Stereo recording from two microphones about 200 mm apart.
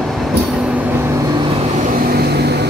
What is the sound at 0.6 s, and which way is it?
Vehicle, 5° right (ahead or behind).